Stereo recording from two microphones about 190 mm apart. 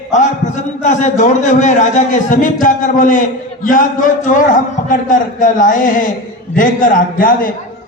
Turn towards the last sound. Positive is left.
turn(degrees=45)  # may be behind; listen again after turning